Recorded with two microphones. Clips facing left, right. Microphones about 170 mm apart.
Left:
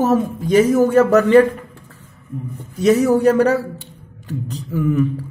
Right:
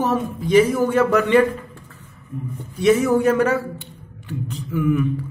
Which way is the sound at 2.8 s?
40° left (ahead or behind).